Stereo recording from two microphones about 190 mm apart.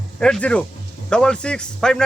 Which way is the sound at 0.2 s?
5° left (ahead or behind).